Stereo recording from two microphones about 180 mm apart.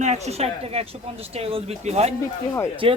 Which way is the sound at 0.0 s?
35° right (ahead or behind).